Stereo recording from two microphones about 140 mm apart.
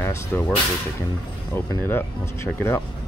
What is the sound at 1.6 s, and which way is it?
Speech, 15° left (ahead or behind).